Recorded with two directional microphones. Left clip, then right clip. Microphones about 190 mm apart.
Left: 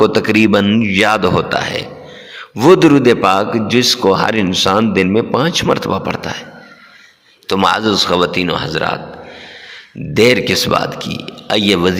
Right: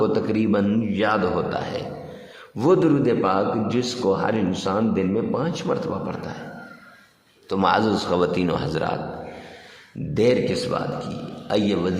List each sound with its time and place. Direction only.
0.0 s a man's voice: 20° left (ahead or behind)
1.4 s a man's voice: 15° left (ahead or behind)
2.6 s a man's voice: 30° left (ahead or behind)
7.4 s a man's voice: 20° left (ahead or behind)
10.2 s a man's voice: 25° left (ahead or behind)